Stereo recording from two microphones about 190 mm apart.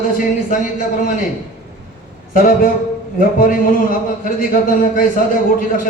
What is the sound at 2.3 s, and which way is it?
A man's voice, 50° left (ahead or behind).